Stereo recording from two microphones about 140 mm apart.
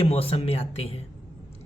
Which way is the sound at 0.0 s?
45° left (ahead or behind).